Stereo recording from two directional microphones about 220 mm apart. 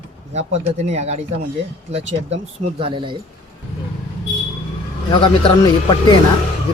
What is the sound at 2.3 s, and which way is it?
Speech, 25° right (ahead or behind).